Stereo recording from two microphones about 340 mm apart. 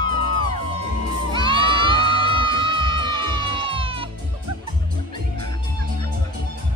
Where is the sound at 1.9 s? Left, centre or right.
Centre.